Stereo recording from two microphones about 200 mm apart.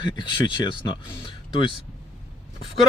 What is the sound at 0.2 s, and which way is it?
Speech, 25° left (ahead or behind).